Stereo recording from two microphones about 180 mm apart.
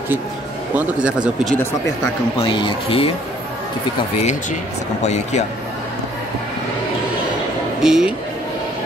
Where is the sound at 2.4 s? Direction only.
30° left (ahead or behind).